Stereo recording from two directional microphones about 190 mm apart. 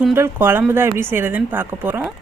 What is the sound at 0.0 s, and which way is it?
Speech, 10° right (ahead or behind).